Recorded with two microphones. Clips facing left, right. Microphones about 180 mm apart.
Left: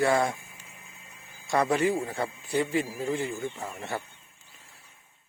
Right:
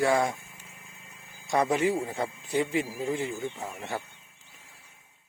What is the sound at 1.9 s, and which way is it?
Speech, 5° right (ahead or behind).